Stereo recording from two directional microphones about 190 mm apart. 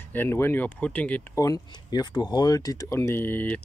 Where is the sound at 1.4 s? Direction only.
20° left (ahead or behind).